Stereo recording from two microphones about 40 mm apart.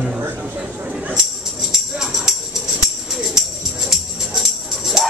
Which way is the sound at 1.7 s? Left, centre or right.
Centre.